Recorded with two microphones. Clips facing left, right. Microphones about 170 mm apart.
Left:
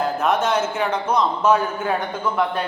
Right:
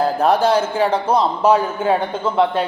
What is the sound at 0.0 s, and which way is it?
A man's voice, 35° right (ahead or behind).